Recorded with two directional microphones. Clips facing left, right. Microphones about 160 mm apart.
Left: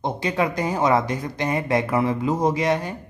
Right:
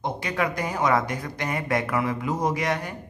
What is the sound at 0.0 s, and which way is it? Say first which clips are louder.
A woman's voice: left 4 dB; 25° left (ahead or behind).